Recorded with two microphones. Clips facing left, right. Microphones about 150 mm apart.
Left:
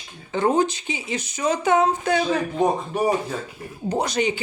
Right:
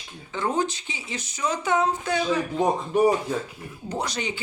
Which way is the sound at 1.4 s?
65° left (ahead or behind).